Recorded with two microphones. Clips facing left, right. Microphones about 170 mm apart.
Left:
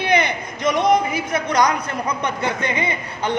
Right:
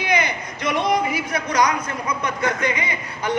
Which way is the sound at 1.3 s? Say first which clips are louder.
Left 3 dB; 30° left (ahead or behind).